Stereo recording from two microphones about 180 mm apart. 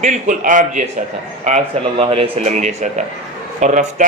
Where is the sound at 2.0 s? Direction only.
30° right (ahead or behind).